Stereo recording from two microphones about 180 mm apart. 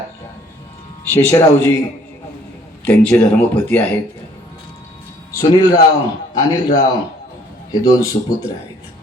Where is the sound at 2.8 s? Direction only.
5° left (ahead or behind).